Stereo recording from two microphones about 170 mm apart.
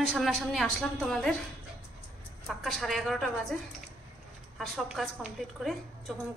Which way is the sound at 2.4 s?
Centre (ahead or behind).